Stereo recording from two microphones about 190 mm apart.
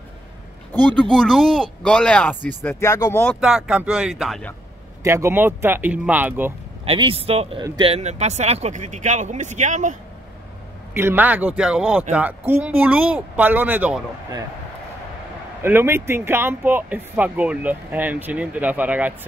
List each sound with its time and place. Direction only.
1.1 s speech: centre (ahead or behind)
3.3 s speech: 5° right (ahead or behind)
5.0 s speech: 15° right (ahead or behind)
6.8 s speech: 30° right (ahead or behind)
11.0 s speech: 10° right (ahead or behind)
15.6 s speech: 10° right (ahead or behind)